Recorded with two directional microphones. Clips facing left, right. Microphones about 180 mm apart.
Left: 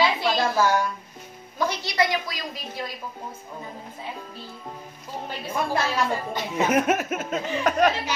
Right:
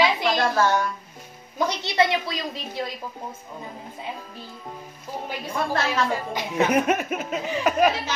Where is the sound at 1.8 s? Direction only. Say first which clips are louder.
Right 2 dB; 25° right (ahead or behind).